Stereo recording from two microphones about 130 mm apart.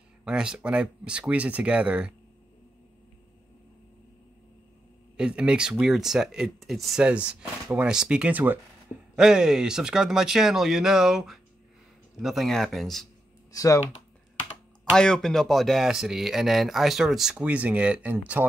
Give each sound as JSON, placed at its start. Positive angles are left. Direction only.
{"t": 0.2, "sound": "speech", "side_deg": -5}
{"t": 5.1, "sound": "speech", "side_deg": -5}
{"t": 13.5, "sound": "speech", "side_deg": 25}
{"t": 14.9, "sound": "speech", "side_deg": 5}